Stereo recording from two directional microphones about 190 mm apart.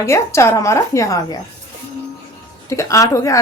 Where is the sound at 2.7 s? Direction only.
15° left (ahead or behind).